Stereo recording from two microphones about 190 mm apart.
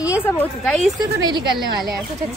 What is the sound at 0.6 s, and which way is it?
Speech, centre (ahead or behind).